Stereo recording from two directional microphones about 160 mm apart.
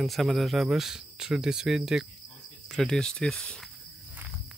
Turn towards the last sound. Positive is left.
turn(degrees=5)  # may be behind; listen again after turning